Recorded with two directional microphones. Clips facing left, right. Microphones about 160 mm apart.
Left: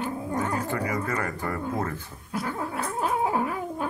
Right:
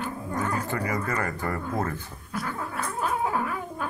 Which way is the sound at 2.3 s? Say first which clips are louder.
Left 2 dB; 25° left (ahead or behind).